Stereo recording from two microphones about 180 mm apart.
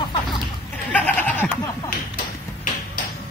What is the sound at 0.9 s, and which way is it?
Goat, 10° left (ahead or behind).